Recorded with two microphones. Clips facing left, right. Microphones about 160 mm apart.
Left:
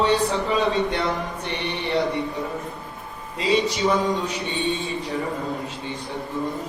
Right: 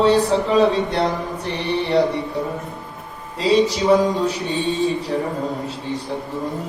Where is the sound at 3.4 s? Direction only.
35° right (ahead or behind).